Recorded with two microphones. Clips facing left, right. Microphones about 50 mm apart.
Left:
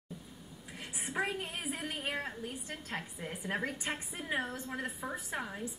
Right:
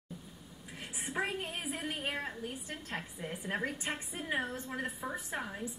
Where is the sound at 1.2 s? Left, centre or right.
Centre.